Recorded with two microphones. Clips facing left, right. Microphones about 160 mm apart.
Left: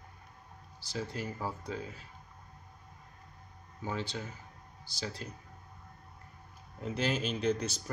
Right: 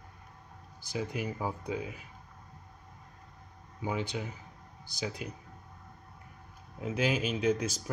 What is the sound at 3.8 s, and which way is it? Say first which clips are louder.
Speech: right 3 dB; 15° right (ahead or behind).